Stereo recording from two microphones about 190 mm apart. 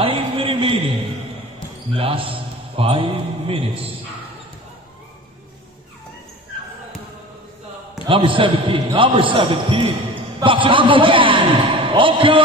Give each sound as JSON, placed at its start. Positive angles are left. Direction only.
{"t": 0.0, "sound": "a sound", "side_deg": -30}
{"t": 2.0, "sound": "a man's voice", "side_deg": -30}
{"t": 8.1, "sound": "a man's voice", "side_deg": -25}